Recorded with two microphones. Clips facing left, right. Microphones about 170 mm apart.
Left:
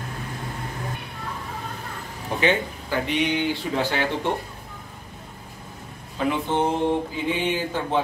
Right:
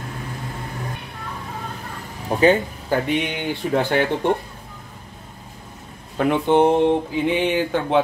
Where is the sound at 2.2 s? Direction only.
45° right (ahead or behind).